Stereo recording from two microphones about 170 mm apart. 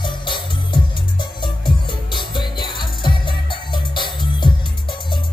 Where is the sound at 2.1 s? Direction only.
25° left (ahead or behind).